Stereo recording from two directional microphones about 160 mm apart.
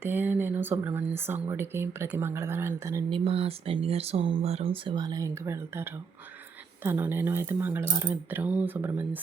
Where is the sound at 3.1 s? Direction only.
35° right (ahead or behind); by 9.2 s 10° right (ahead or behind).